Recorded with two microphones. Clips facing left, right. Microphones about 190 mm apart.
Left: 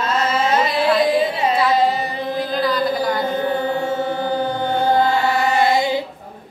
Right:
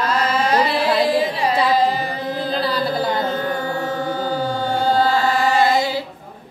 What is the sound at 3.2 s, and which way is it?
Chant, 20° left (ahead or behind).